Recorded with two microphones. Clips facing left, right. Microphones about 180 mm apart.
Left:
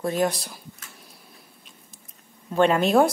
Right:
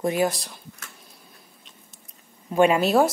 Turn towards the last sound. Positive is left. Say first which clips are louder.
# even
turn(degrees=-5)  # may be behind; listen again after turning